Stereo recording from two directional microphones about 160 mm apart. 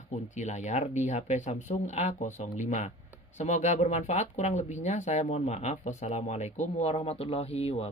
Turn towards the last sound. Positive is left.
turn(degrees=40)  # may be behind; listen again after turning